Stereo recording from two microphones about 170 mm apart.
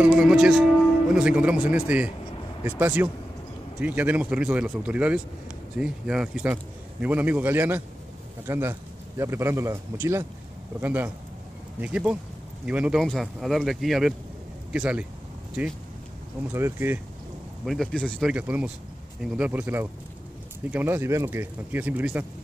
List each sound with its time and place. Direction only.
0.0 s a man's voice: 5° right (ahead or behind)
16.5 s a man's voice: 15° right (ahead or behind)
17.6 s speech: 5° left (ahead or behind)
18.3 s a man's voice: 10° right (ahead or behind)